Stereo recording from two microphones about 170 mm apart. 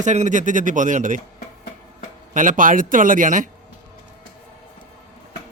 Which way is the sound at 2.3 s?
50° right (ahead or behind).